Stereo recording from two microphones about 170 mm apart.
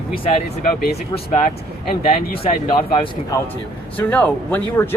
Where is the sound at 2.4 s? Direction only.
30° left (ahead or behind).